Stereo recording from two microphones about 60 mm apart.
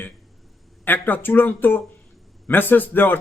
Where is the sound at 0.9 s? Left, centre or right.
Left.